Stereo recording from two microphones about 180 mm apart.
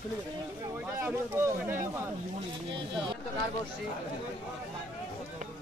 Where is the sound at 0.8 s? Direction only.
15° right (ahead or behind).